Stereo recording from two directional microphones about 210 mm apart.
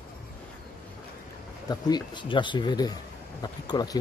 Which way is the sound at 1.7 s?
20° left (ahead or behind).